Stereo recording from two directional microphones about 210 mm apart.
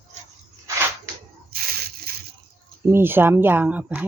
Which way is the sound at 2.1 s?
45° right (ahead or behind).